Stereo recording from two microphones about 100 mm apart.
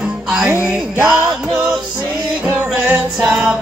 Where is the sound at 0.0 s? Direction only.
10° right (ahead or behind).